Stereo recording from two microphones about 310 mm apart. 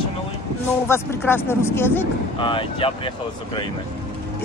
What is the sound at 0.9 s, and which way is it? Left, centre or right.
Speech, centre.